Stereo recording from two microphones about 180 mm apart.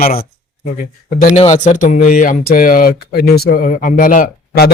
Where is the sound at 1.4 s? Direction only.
40° left (ahead or behind).